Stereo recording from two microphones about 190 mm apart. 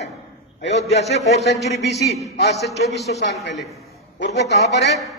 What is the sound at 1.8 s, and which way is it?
Speech, 60° left (ahead or behind).